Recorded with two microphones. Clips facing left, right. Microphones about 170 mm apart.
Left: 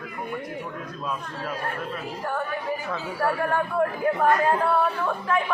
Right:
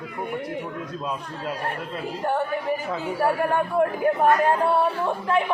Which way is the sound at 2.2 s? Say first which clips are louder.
Right 5 dB; 25° right (ahead or behind).